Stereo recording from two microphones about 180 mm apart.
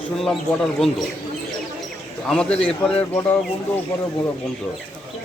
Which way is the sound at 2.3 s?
5° left (ahead or behind).